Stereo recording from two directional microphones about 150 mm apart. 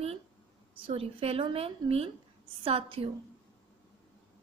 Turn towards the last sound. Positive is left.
turn(degrees=-40)  # may be behind; listen again after turning